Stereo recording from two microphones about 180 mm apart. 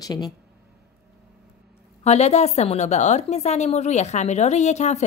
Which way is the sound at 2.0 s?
40° left (ahead or behind).